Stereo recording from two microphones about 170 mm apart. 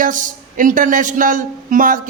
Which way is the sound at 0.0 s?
50° right (ahead or behind).